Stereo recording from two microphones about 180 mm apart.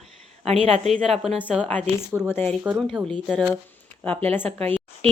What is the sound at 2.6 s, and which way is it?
Speech, 10° right (ahead or behind).